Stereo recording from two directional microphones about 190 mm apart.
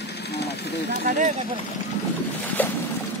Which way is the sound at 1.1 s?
40° right (ahead or behind).